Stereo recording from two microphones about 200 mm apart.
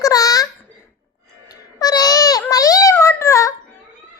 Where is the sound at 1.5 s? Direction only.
20° left (ahead or behind).